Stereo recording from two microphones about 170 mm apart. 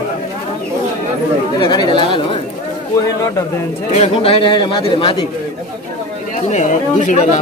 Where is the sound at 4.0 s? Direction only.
35° left (ahead or behind).